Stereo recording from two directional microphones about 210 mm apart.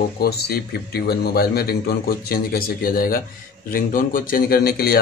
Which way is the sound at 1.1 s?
50° left (ahead or behind).